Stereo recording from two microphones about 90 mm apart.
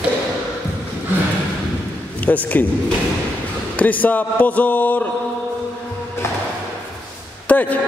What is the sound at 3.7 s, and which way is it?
Speech, 15° left (ahead or behind).